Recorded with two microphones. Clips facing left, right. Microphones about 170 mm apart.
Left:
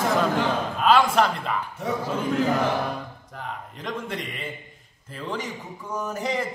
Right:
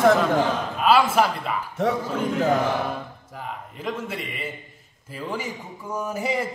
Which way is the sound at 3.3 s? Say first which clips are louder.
Right 1 dB; 5° right (ahead or behind).